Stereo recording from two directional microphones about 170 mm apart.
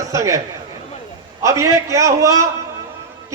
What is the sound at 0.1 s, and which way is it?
A man's voice, 20° right (ahead or behind).